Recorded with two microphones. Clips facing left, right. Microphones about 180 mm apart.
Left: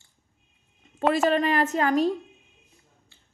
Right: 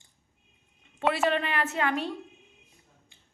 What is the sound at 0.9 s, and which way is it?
A woman's voice, 40° left (ahead or behind).